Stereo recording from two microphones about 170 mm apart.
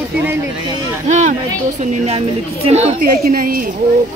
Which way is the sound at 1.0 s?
45° right (ahead or behind).